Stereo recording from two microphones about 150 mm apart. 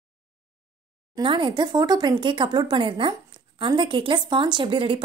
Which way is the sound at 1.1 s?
35° right (ahead or behind).